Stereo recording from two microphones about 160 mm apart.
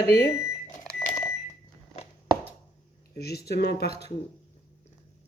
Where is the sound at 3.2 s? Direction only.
80° left.